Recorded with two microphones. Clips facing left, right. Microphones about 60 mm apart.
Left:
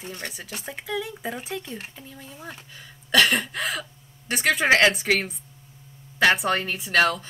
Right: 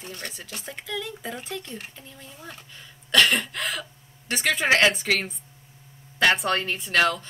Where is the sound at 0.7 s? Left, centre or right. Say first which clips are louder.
Left 3 dB; centre.